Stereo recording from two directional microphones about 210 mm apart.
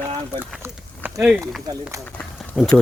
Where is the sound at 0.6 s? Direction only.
10° right (ahead or behind).